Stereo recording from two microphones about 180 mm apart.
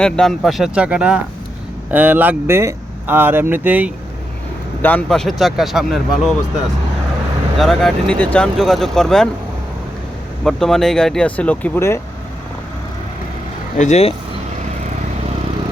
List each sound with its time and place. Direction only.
0.0 s speech: centre (ahead or behind)
4.8 s speech: 10° left (ahead or behind)
7.6 s speech: centre (ahead or behind)
10.4 s speech: centre (ahead or behind)
13.7 s speech: 40° left (ahead or behind)